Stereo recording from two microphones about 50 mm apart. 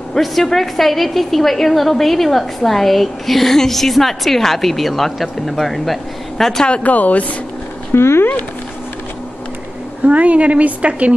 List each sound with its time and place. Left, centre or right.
0.1 s a woman's voice: centre
6.7 s speech: left
7.9 s speech: left
10.0 s a woman's voice: right